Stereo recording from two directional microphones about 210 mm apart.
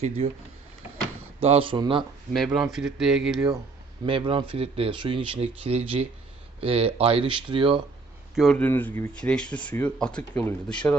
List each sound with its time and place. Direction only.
0.2 s speech: 30° right (ahead or behind)
2.6 s speech: centre (ahead or behind)
4.0 s speech: 25° right (ahead or behind)
8.4 s speech: 5° left (ahead or behind)